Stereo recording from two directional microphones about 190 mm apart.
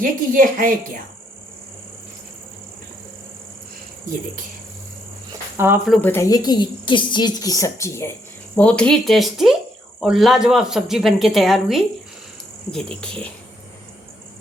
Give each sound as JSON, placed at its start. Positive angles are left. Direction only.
{"t": 0.0, "sound": "speech", "side_deg": -45}
{"t": 5.5, "sound": "speech", "side_deg": -10}
{"t": 5.8, "sound": "a woman's voice", "side_deg": 5}